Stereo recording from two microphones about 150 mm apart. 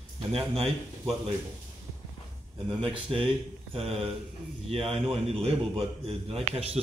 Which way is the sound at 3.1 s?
35° right (ahead or behind).